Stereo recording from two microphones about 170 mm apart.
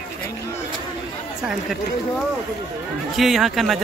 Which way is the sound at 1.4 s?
5° right (ahead or behind).